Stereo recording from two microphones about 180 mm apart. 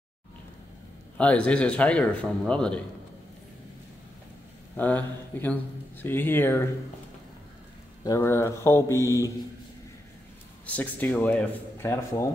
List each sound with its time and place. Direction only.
1.1 s a man's voice: 5° left (ahead or behind)
4.7 s a man's voice: 10° left (ahead or behind)
8.0 s a man's voice: 15° left (ahead or behind)
10.7 s a man's voice: 10° left (ahead or behind)